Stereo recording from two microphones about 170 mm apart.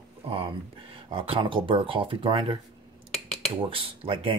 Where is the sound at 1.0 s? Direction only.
30° right (ahead or behind).